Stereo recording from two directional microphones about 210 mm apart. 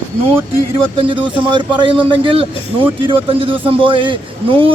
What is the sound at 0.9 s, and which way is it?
Speech, 25° right (ahead or behind).